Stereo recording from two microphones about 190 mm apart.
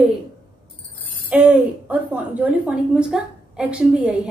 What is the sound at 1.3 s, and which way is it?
A woman's voice, 10° right (ahead or behind).